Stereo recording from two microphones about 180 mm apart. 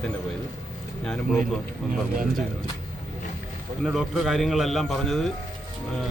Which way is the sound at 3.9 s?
Centre (ahead or behind).